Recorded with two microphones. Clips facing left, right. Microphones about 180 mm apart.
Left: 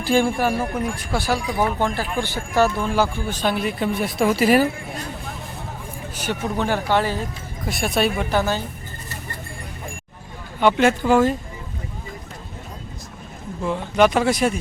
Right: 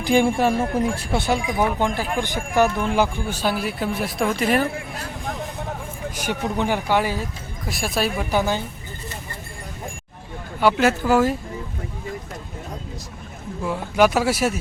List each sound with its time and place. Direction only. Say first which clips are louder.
0.0 s speech: right 1 dB; 15° right (ahead or behind); by 4.7 s 5° left (ahead or behind)
6.1 s speech: even; 15° right (ahead or behind)
7.7 s speech: left 3 dB; centre (ahead or behind)
8.3 s speech: even; 15° right (ahead or behind)
10.6 s speech: left 1 dB; 5° right (ahead or behind)
13.6 s speech: left 1 dB; 5° right (ahead or behind)